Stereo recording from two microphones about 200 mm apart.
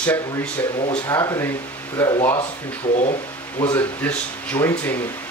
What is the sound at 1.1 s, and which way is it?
Speech, 15° left (ahead or behind).